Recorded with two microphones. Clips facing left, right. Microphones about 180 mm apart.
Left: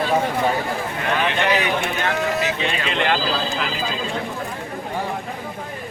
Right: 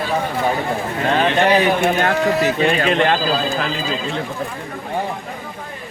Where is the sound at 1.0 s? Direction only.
35° right (ahead or behind).